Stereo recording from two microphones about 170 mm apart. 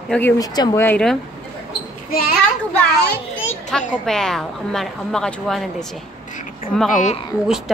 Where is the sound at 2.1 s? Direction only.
60° left (ahead or behind).